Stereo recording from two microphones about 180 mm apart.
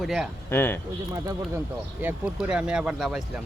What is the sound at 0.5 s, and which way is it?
Speech, 10° left (ahead or behind).